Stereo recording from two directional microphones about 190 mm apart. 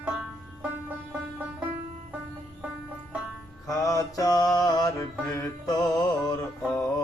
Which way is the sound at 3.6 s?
20° left (ahead or behind).